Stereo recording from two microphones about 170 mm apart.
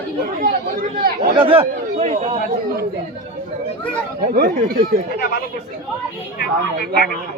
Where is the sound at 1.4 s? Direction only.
30° right (ahead or behind).